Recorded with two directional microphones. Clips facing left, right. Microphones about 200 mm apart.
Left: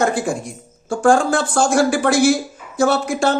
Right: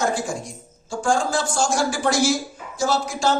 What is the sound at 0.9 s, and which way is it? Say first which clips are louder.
Speech: left 7 dB; 60° left (ahead or behind).